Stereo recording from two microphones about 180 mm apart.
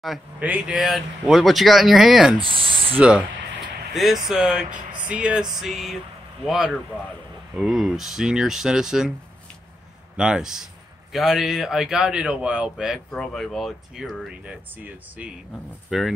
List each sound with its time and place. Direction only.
0.0 s a man's voice: 5° right (ahead or behind)
2.4 s speech: 30° right (ahead or behind)
3.0 s a man's voice: 5° right (ahead or behind)
10.1 s a man's voice: 5° right (ahead or behind)